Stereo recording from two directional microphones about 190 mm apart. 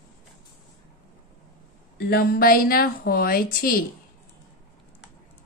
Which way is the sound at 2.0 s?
55° left (ahead or behind).